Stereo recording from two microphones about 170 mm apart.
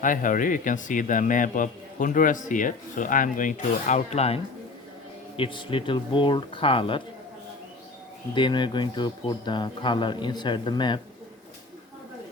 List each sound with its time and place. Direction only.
0.0 s a man's voice: 50° left (ahead or behind)
5.4 s speech: 30° left (ahead or behind)
8.4 s speech: 25° left (ahead or behind)